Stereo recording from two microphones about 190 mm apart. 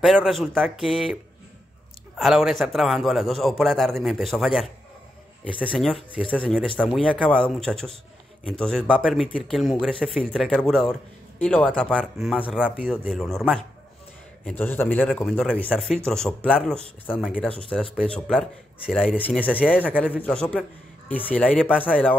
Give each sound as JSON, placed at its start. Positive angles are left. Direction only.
{"t": 0.0, "sound": "speech", "side_deg": 0}
{"t": 2.1, "sound": "speech", "side_deg": 0}
{"t": 5.7, "sound": "a man's voice", "side_deg": 0}
{"t": 19.1, "sound": "a man's voice", "side_deg": 10}
{"t": 19.7, "sound": "speech", "side_deg": -5}
{"t": 20.2, "sound": "a man's voice", "side_deg": 5}
{"t": 21.7, "sound": "speech", "side_deg": -5}